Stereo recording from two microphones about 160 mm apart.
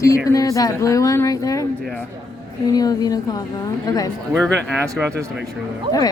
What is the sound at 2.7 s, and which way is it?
Speech, 25° left (ahead or behind).